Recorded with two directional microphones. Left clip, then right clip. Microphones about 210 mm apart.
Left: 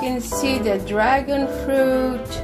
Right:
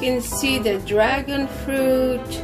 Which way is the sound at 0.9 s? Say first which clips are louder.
Left 1 dB; 10° left (ahead or behind).